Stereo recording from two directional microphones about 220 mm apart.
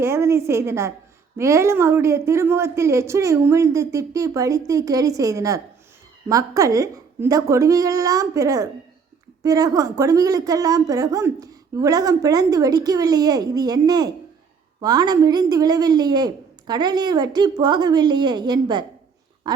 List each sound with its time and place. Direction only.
0.0 s a woman's voice: 10° right (ahead or behind)